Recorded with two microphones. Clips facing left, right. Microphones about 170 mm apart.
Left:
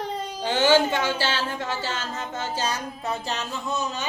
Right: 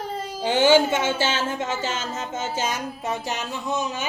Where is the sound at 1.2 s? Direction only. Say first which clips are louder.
Right 3 dB; 20° right (ahead or behind).